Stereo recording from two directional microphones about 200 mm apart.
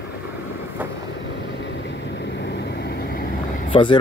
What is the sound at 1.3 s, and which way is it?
Vehicle, 65° left (ahead or behind).